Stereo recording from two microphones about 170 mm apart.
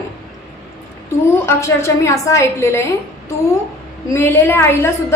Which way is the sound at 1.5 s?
15° left (ahead or behind).